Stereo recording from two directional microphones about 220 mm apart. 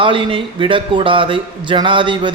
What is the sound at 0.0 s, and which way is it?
A man's voice, 25° right (ahead or behind).